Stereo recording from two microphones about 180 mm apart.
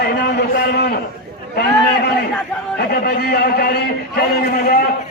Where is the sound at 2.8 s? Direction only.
60° left (ahead or behind).